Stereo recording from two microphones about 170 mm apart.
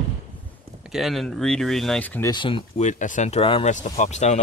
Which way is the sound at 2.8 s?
45° left (ahead or behind).